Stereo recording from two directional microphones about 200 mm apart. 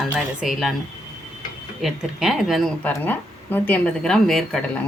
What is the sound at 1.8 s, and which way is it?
Speech, centre (ahead or behind).